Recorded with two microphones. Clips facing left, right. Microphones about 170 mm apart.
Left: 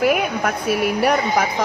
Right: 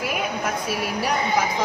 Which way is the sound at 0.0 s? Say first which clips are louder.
Left 7 dB; 60° left (ahead or behind).